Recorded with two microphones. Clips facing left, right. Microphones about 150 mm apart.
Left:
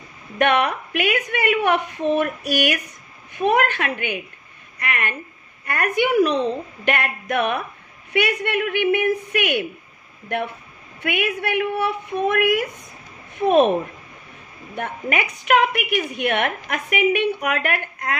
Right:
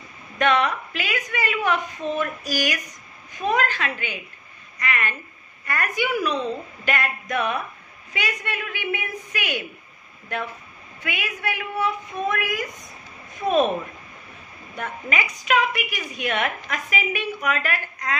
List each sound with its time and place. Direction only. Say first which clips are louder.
0.4 s a woman's voice: left 2 dB; 60° left (ahead or behind)
11.0 s a woman's voice: left 8 dB; 60° left (ahead or behind)
14.8 s a woman's voice: left 3 dB; 60° left (ahead or behind)